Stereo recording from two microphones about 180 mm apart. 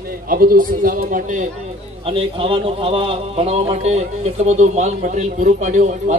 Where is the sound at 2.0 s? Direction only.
30° right (ahead or behind).